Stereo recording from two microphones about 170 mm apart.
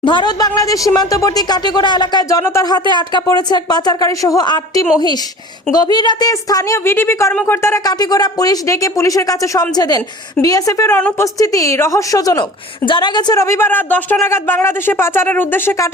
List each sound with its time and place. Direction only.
0.0 s a woman's voice: 30° left (ahead or behind); by 15.9 s 10° left (ahead or behind)